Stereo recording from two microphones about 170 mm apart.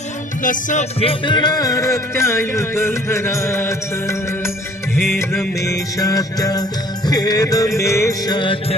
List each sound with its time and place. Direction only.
0.4 s music: 45° left (ahead or behind); by 4.5 s 15° left (ahead or behind)
5.5 s music: 20° left (ahead or behind)